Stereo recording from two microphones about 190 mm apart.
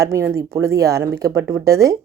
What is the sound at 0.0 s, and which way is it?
Speech, 15° right (ahead or behind).